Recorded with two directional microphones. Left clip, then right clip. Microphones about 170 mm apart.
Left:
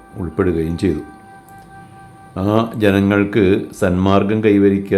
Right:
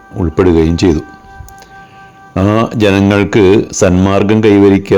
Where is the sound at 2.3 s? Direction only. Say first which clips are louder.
Right 6 dB; 50° right (ahead or behind).